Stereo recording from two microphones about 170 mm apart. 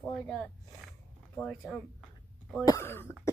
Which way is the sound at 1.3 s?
10° left (ahead or behind).